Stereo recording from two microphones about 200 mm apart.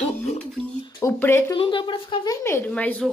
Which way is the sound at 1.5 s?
25° left (ahead or behind).